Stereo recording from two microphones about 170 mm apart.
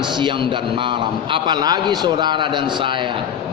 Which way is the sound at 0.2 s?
30° right (ahead or behind).